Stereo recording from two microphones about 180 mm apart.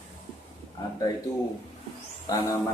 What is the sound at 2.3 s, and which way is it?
Speech, 20° left (ahead or behind).